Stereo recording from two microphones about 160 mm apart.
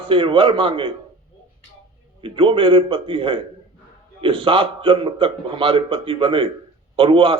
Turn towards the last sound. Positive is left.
turn(degrees=-35)  # may be behind; listen again after turning